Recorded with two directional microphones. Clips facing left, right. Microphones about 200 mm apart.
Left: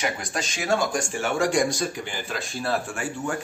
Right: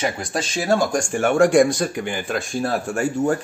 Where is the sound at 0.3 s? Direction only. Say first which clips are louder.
Right 6 dB; 35° right (ahead or behind).